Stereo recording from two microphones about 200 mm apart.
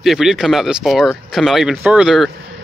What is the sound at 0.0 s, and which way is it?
Speech, centre (ahead or behind).